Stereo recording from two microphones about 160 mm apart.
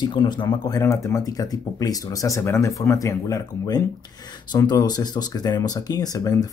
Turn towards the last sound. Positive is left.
turn(degrees=20)  # may be behind; listen again after turning